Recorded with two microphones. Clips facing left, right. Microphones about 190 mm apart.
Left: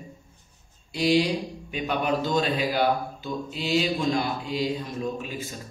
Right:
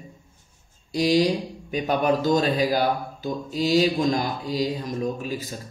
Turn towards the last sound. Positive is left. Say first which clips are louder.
# right 3 dB
turn(degrees=-40)  # may be behind; listen again after turning